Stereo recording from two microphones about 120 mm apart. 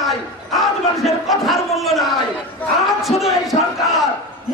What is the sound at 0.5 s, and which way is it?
Battle cry, centre (ahead or behind).